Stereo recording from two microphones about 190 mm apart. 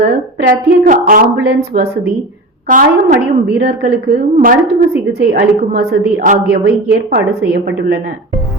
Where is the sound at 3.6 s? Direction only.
55° right (ahead or behind).